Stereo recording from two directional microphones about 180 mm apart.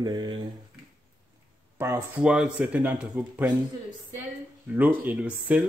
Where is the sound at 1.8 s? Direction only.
15° right (ahead or behind).